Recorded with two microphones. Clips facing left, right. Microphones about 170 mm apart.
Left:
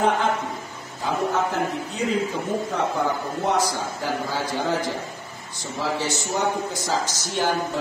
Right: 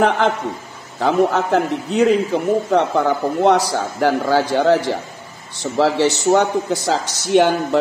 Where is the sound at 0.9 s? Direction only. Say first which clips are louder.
Right 8 dB; 80° right.